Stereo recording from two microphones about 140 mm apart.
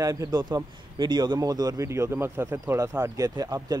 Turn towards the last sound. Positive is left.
turn(degrees=-25)  # may be behind; listen again after turning